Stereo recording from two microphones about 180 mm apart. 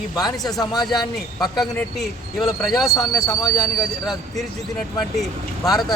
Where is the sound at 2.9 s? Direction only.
20° left (ahead or behind).